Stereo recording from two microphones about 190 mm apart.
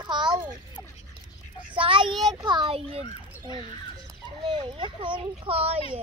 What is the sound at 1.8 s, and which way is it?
A child's voice, 25° right (ahead or behind).